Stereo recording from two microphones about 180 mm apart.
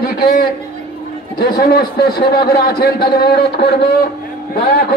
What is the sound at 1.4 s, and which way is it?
A man's voice, 60° left (ahead or behind).